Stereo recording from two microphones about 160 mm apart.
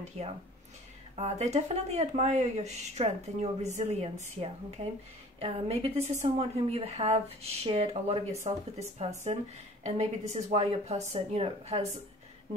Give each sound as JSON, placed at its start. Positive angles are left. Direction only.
{"t": 0.2, "sound": "a woman's voice", "side_deg": -45}